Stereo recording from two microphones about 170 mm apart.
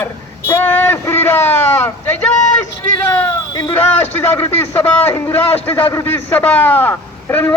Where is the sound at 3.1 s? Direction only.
20° left (ahead or behind).